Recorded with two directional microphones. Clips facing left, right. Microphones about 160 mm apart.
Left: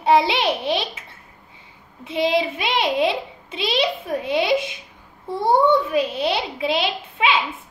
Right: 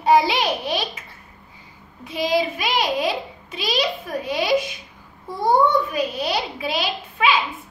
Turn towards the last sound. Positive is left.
turn(degrees=25)  # may be behind; listen again after turning